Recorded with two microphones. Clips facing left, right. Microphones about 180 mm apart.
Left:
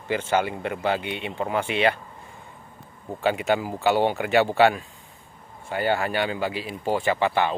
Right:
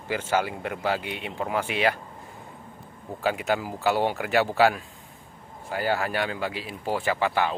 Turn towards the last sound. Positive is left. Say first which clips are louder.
# left 2 dB
turn(degrees=0)  # may be behind; listen again after turning